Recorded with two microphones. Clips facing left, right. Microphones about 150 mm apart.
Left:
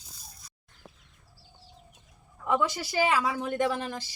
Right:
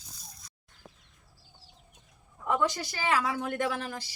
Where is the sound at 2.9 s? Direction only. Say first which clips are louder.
Left 3 dB; 15° left (ahead or behind).